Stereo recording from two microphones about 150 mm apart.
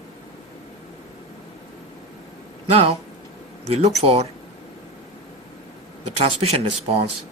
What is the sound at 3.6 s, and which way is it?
Speech, 45° right (ahead or behind).